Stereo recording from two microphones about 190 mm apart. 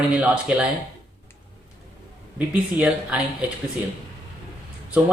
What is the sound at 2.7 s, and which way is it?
Speech, 5° right (ahead or behind).